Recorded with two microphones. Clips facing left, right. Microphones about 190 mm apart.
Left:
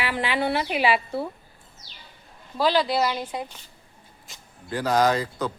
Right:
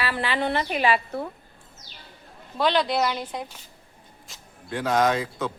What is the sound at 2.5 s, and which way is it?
Speech, 5° left (ahead or behind).